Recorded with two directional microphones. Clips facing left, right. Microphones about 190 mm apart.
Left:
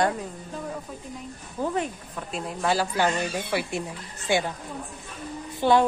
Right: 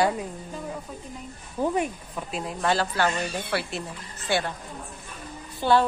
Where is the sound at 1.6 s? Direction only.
15° right (ahead or behind); by 4.5 s 15° left (ahead or behind).